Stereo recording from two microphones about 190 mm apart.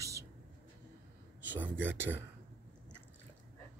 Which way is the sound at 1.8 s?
10° right (ahead or behind).